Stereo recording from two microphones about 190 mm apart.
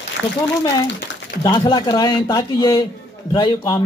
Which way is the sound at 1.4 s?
20° left (ahead or behind).